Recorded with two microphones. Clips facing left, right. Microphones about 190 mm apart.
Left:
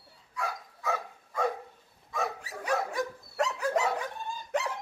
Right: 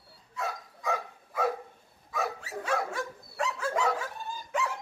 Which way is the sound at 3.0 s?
15° left (ahead or behind).